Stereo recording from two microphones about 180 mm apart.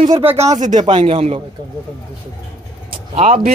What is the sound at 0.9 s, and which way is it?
Speech, 35° right (ahead or behind).